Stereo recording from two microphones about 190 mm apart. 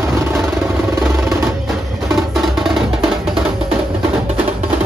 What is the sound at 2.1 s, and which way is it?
Music, centre (ahead or behind).